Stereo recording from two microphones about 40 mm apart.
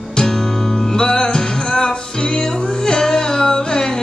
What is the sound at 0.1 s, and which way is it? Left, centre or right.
Music, centre.